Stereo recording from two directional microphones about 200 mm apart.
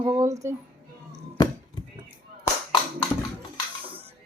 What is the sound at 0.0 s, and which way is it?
Music, 15° right (ahead or behind).